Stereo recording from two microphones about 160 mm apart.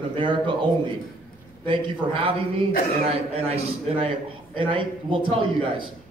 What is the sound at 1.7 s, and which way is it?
Speech, 30° right (ahead or behind).